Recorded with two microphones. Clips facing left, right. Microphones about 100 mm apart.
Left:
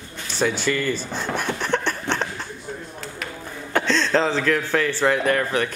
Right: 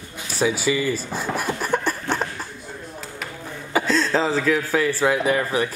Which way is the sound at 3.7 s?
5° right (ahead or behind).